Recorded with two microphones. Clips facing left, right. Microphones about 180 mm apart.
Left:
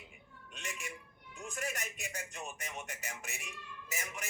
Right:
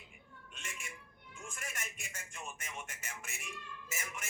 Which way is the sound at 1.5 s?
40° left (ahead or behind).